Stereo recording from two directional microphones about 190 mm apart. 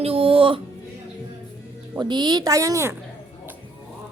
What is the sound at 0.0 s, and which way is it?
Speech, 30° right (ahead or behind).